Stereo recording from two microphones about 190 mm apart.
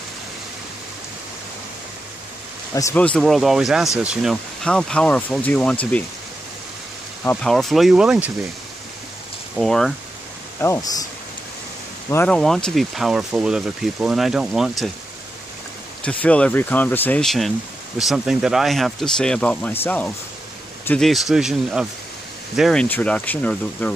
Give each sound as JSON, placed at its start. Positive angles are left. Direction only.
{"t": 2.7, "sound": "speech", "side_deg": 15}
{"t": 7.2, "sound": "speech", "side_deg": 0}
{"t": 9.6, "sound": "speech", "side_deg": 0}
{"t": 10.6, "sound": "speech", "side_deg": 15}
{"t": 12.1, "sound": "speech", "side_deg": 10}
{"t": 16.0, "sound": "speech", "side_deg": 5}